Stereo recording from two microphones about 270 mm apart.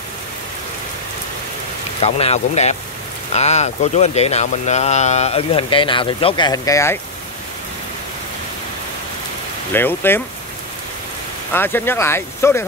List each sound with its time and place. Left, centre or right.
2.0 s speech: left
9.7 s speech: centre
11.5 s speech: centre